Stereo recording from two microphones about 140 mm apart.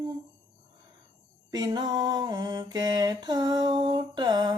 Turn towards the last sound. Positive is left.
turn(degrees=-30)  # may be behind; listen again after turning